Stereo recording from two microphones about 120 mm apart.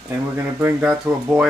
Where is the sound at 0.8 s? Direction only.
5° right (ahead or behind).